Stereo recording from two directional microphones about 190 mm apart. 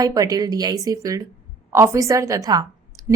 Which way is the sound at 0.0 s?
20° right (ahead or behind).